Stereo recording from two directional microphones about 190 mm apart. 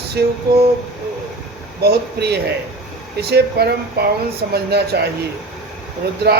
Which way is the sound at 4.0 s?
55° right (ahead or behind).